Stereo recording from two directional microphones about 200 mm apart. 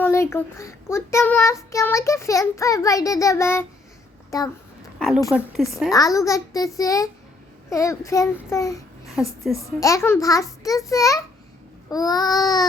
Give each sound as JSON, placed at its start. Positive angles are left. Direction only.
{"t": 0.0, "sound": "a child's voice", "side_deg": 15}
{"t": 4.9, "sound": "a sound", "side_deg": 0}
{"t": 5.9, "sound": "a child's voice", "side_deg": 15}
{"t": 9.0, "sound": "a woman's voice", "side_deg": 0}
{"t": 9.8, "sound": "a child's voice", "side_deg": 15}